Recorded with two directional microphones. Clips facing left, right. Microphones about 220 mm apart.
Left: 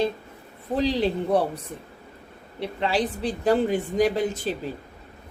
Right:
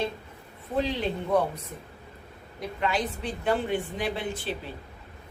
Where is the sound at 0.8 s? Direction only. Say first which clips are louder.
Left 4 dB; 35° left (ahead or behind).